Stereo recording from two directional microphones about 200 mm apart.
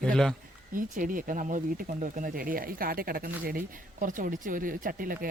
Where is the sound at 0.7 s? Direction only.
40° right (ahead or behind).